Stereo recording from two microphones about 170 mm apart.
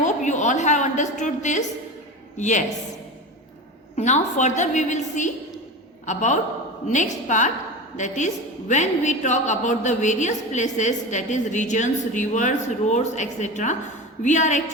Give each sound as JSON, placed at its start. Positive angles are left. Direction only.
{"t": 0.0, "sound": "a woman's voice", "side_deg": 45}
{"t": 3.9, "sound": "a woman's voice", "side_deg": 45}